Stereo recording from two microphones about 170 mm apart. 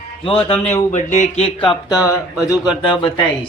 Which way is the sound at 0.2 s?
35° left (ahead or behind).